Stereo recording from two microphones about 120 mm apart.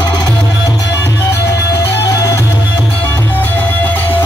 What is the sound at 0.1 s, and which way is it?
Music, 35° left (ahead or behind).